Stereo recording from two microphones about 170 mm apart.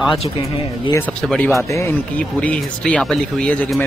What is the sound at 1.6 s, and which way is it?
Speech, 15° left (ahead or behind).